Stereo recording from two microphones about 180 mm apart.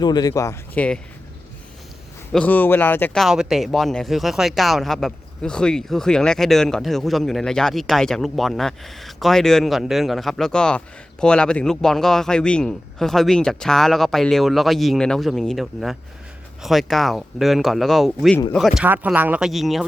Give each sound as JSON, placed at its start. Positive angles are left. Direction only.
{"t": 0.0, "sound": "speech", "side_deg": 20}
{"t": 2.3, "sound": "speech", "side_deg": 10}